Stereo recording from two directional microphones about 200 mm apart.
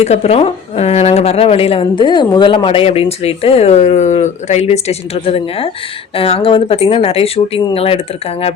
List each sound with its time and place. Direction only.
0.0 s speech: 35° left (ahead or behind)